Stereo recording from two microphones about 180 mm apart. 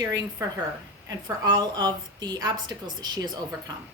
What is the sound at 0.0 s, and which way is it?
A woman's voice, 20° right (ahead or behind).